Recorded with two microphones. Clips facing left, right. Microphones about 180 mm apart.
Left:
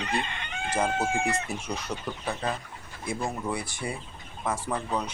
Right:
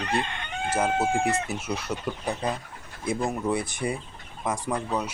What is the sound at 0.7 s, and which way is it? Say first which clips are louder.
Speech: right 3 dB; 5° right (ahead or behind).